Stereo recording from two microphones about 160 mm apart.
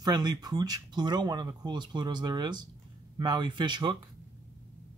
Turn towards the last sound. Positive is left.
turn(degrees=-30)  # may be behind; listen again after turning